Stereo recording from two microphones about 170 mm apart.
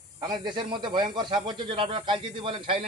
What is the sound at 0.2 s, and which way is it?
Speech, 25° right (ahead or behind).